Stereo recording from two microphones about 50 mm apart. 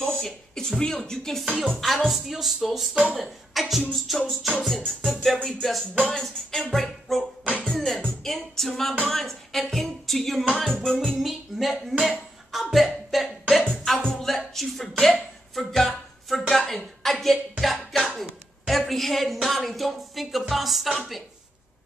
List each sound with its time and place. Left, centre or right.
0.0 s speech: centre
1.5 s music: centre
2.0 s speech: centre
6.0 s music: centre
7.1 s speech: centre
7.4 s music: left
7.7 s music: centre
11.1 s speech: centre
11.8 s a sound: centre
15.5 s speech: centre